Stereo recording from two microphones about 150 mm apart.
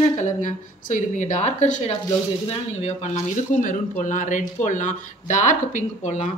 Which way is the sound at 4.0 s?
55° left (ahead or behind).